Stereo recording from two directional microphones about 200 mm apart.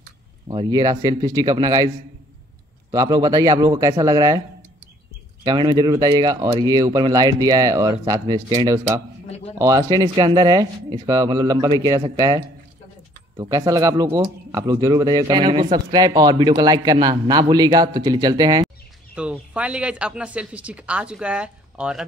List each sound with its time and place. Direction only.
0.5 s speech: 20° right (ahead or behind)
2.9 s speech: 20° right (ahead or behind)
5.4 s speech: 20° right (ahead or behind)
19.1 s speech: 5° right (ahead or behind)